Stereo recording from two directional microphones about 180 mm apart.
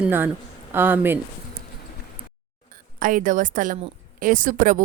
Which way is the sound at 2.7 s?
50° right (ahead or behind).